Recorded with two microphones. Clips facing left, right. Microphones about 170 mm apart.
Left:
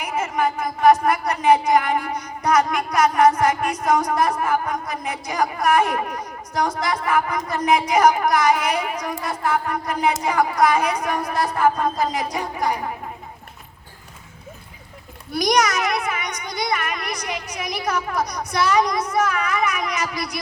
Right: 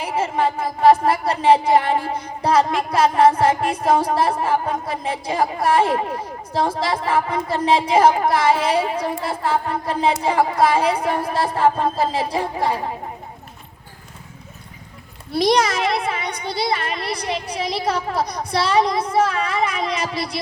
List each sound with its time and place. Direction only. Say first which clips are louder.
0.0 s speech: right 2 dB; 30° right (ahead or behind)
15.3 s speech: right 2 dB; 30° right (ahead or behind)